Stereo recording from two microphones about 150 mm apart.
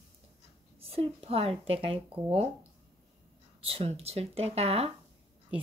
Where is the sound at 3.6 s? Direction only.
40° right (ahead or behind).